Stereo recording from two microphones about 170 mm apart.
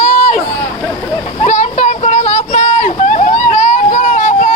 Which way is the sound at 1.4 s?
45° left (ahead or behind).